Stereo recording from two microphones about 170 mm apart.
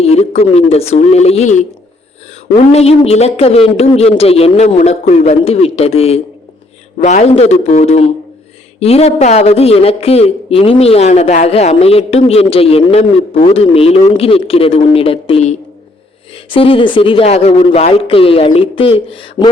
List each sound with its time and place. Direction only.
0.0 s a man's voice: 40° left (ahead or behind)
2.7 s a man's voice: 35° left (ahead or behind)